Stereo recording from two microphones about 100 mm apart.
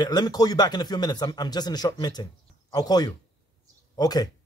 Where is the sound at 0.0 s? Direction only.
45° left (ahead or behind).